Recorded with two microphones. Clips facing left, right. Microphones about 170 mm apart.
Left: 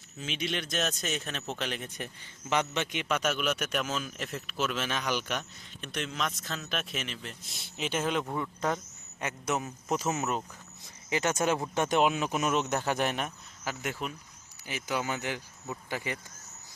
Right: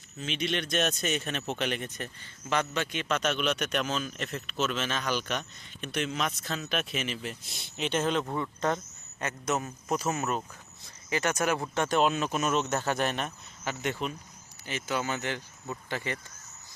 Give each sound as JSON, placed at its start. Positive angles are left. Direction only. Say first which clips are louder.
{"t": 0.2, "sound": "speech", "louder": "right 3 dB", "side_deg": 5}
{"t": 1.9, "sound": "speech", "louder": "right 1 dB", "side_deg": 15}
{"t": 7.8, "sound": "speech", "louder": "right 2 dB", "side_deg": 5}